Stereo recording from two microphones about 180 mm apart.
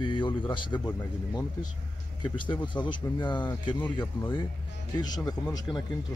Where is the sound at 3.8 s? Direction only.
10° left (ahead or behind).